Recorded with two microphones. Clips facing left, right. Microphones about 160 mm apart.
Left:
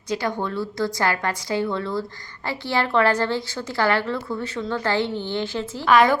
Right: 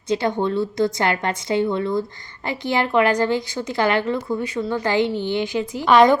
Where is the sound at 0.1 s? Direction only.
25° right (ahead or behind).